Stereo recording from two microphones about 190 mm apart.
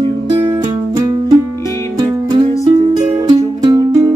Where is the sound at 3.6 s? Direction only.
20° right (ahead or behind).